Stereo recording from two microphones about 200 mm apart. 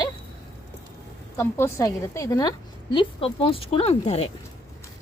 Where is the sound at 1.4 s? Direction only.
10° left (ahead or behind); by 4.3 s 30° left (ahead or behind).